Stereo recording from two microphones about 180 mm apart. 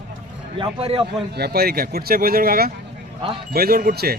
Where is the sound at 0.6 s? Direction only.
30° right (ahead or behind).